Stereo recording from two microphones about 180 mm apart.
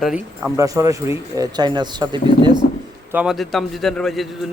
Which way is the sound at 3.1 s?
Centre (ahead or behind).